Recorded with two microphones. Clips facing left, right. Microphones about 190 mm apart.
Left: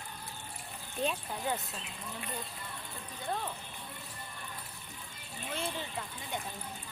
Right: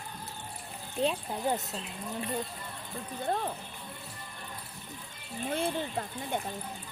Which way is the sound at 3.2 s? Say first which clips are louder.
Right 5 dB; 45° right (ahead or behind).